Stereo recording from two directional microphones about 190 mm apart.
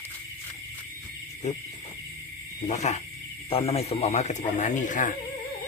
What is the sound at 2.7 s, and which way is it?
Speech, 35° left (ahead or behind).